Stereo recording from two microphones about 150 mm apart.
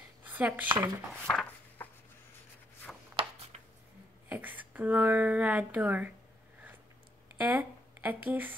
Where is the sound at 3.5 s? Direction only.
50° right (ahead or behind).